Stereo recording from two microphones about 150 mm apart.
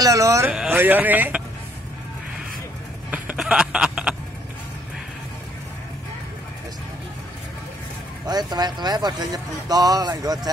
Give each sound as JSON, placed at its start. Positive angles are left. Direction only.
{"t": 0.0, "sound": "speech", "side_deg": -20}
{"t": 0.5, "sound": "speech", "side_deg": -10}
{"t": 3.1, "sound": "a sound", "side_deg": -10}
{"t": 8.3, "sound": "speech", "side_deg": -25}